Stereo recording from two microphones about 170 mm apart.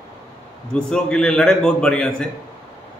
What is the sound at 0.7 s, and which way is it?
A man's voice, 5° left (ahead or behind).